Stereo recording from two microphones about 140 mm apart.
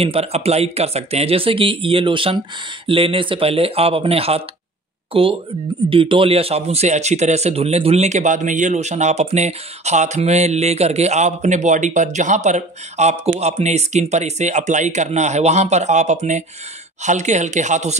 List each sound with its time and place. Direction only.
0.0 s speech: 45° right (ahead or behind)